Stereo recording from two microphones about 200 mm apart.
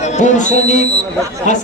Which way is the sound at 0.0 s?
35° left (ahead or behind).